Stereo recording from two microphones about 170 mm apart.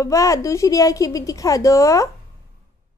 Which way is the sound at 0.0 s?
20° left (ahead or behind).